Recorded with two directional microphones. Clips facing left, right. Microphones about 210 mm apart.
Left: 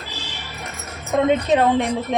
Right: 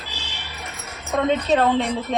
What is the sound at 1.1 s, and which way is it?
A woman's voice, 15° left (ahead or behind).